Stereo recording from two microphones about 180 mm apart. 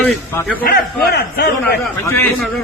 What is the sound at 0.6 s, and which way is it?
A man's voice, 60° left (ahead or behind).